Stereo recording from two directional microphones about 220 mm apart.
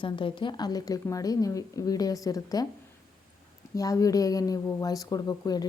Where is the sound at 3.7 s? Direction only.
15° left (ahead or behind).